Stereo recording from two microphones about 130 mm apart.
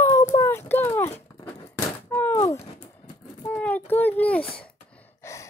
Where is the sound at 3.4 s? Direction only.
10° left (ahead or behind).